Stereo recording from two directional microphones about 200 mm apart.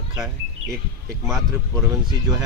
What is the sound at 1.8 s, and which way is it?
Speech, 20° right (ahead or behind).